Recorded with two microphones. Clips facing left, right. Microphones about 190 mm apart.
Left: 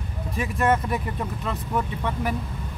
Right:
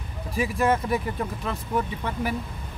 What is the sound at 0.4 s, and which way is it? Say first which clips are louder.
Speech: even; centre (ahead or behind).